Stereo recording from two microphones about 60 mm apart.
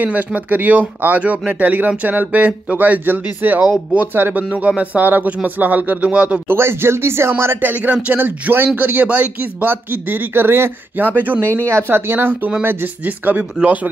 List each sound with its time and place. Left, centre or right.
0.0 s speech: right
4.4 s speech: right
6.4 s speech: right
7.7 s speech: right